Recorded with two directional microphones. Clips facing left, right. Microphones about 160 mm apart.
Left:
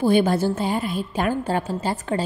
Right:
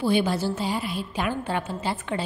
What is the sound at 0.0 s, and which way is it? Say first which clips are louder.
A woman's voice: left 5 dB; 50° left (ahead or behind).